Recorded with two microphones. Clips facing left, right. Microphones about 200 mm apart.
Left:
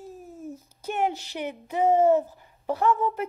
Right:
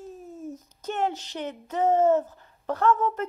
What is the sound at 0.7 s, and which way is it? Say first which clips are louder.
Speech: left 1 dB; 10° left (ahead or behind).